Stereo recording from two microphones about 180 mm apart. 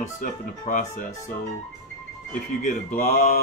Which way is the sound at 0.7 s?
45° left (ahead or behind).